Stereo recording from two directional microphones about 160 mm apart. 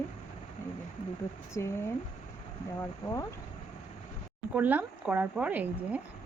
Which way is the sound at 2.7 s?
20° left (ahead or behind).